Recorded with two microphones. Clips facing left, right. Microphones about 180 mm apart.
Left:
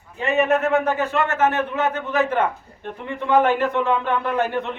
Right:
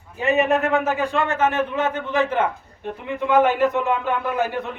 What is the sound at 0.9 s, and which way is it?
A man's voice, 15° right (ahead or behind).